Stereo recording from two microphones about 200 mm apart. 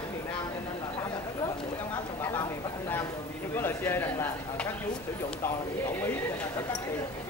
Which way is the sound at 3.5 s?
10° left (ahead or behind).